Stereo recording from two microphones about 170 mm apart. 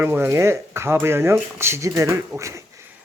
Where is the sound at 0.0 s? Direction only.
10° right (ahead or behind).